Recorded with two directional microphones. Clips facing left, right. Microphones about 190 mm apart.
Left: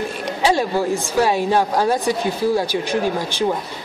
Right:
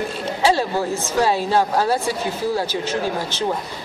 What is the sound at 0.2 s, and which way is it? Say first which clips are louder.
Speech: even; 15° left (ahead or behind).